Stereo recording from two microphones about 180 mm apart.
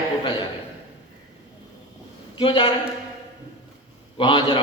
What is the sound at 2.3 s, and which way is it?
Speech, 25° left (ahead or behind).